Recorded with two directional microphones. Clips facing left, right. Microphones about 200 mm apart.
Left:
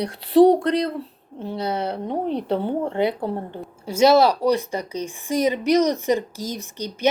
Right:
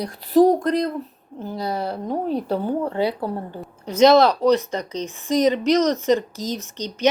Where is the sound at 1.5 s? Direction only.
70° left (ahead or behind).